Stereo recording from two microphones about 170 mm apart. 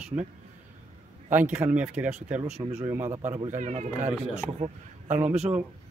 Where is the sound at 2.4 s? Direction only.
40° right (ahead or behind).